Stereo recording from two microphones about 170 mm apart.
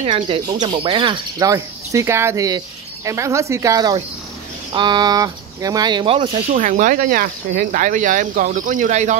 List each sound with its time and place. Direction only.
0.0 s speech: 30° right (ahead or behind)
6.6 s speech: 50° right (ahead or behind)